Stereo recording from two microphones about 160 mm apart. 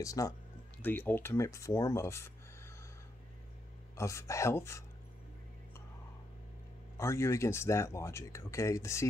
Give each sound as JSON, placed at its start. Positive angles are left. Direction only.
{"t": 0.0, "sound": "speech", "side_deg": 20}
{"t": 3.9, "sound": "speech", "side_deg": 20}
{"t": 7.0, "sound": "speech", "side_deg": 15}